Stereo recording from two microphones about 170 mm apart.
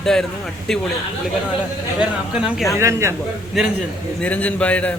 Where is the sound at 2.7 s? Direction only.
15° right (ahead or behind).